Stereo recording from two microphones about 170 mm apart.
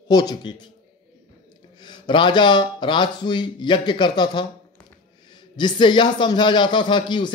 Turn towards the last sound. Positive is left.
turn(degrees=25)  # may be behind; listen again after turning